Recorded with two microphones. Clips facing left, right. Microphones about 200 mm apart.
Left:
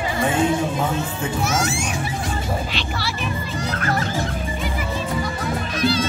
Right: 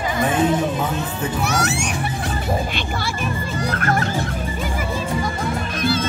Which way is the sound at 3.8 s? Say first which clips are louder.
Right 2 dB; 55° right (ahead or behind).